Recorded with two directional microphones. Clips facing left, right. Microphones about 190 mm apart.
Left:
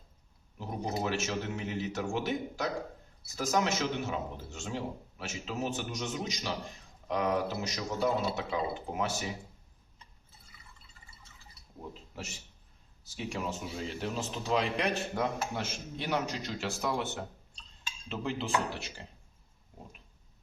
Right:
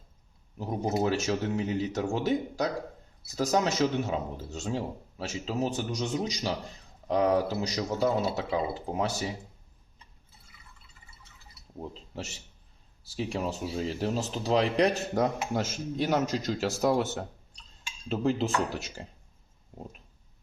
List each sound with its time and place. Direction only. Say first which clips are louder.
0.6 s speech: right 6 dB; 40° right (ahead or behind)
13.1 s speech: right 5 dB; 35° right (ahead or behind)